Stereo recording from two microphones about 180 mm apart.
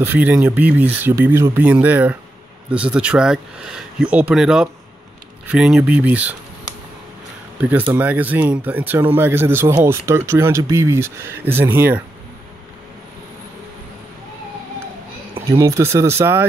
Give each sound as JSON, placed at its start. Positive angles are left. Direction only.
{"t": 0.0, "sound": "speech", "side_deg": -10}
{"t": 7.9, "sound": "speech", "side_deg": -10}
{"t": 15.4, "sound": "speech", "side_deg": -15}